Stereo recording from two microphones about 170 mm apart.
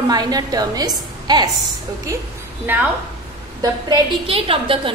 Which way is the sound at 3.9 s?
30° right (ahead or behind).